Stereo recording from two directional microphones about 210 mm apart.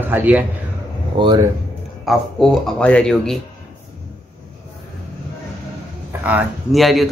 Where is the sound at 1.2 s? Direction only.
20° right (ahead or behind).